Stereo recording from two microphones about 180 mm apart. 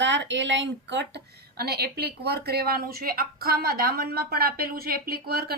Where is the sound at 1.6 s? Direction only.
60° right (ahead or behind).